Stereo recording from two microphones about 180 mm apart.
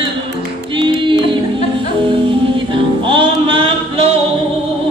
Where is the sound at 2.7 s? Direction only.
30° right (ahead or behind).